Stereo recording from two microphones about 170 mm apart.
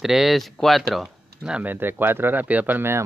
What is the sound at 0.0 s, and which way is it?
Speech, centre (ahead or behind).